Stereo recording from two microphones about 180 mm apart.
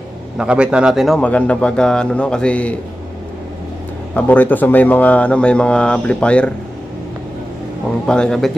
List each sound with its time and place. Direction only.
0.4 s speech: 5° right (ahead or behind)
4.1 s speech: 10° left (ahead or behind)
8.1 s speech: 5° left (ahead or behind)